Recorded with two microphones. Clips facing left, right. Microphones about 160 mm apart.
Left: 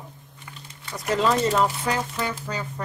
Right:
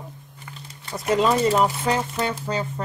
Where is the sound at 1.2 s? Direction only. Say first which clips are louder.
Right 1 dB; 10° right (ahead or behind).